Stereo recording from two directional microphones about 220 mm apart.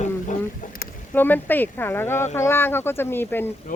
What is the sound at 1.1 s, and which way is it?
Speech, 10° left (ahead or behind).